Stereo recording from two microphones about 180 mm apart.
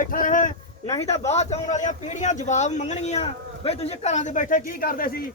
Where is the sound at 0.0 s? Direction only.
50° left (ahead or behind).